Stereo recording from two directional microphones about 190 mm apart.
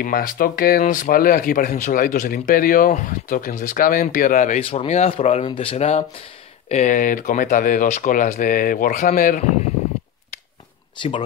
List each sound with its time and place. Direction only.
0.0 s speech: 50° left (ahead or behind)
11.0 s speech: 30° left (ahead or behind)